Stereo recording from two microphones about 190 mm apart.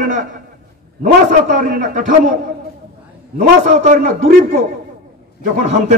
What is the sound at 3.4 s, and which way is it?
A man's voice, 40° right (ahead or behind).